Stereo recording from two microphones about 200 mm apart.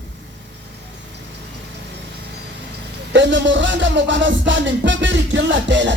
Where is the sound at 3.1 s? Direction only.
65° right (ahead or behind).